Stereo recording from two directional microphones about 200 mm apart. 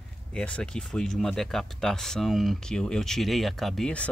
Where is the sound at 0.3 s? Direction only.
5° left (ahead or behind).